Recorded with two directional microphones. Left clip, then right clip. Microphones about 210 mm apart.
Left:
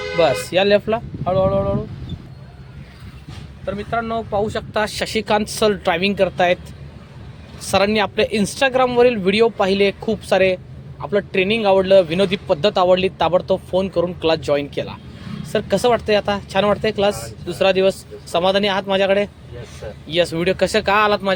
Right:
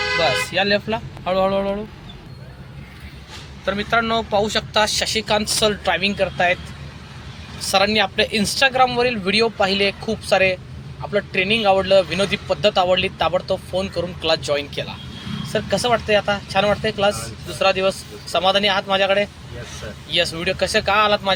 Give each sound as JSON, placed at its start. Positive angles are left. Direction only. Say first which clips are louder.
{"t": 0.2, "sound": "speech", "louder": "left 6 dB", "side_deg": 45}
{"t": 1.2, "sound": "speech", "louder": "left 1 dB", "side_deg": 10}
{"t": 3.7, "sound": "speech", "louder": "right 3 dB", "side_deg": 5}
{"t": 4.4, "sound": "speech", "louder": "right 3 dB", "side_deg": 35}
{"t": 7.7, "sound": "speech", "louder": "even", "side_deg": 45}